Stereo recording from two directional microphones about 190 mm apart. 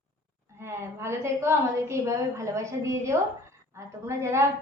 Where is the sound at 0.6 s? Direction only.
15° right (ahead or behind).